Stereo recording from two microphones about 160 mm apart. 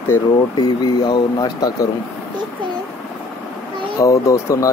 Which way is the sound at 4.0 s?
20° left (ahead or behind).